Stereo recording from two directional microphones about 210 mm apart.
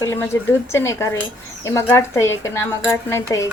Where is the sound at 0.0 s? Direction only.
15° left (ahead or behind).